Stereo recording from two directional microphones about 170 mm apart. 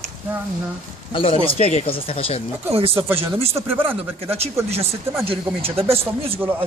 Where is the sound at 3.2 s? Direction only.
35° right (ahead or behind).